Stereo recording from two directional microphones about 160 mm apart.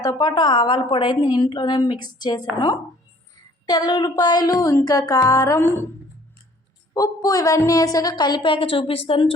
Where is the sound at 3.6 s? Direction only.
25° left (ahead or behind).